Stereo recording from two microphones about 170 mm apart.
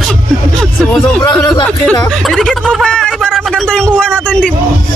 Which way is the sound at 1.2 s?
20° left (ahead or behind).